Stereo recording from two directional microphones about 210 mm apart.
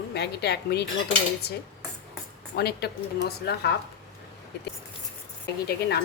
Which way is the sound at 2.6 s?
50° left (ahead or behind).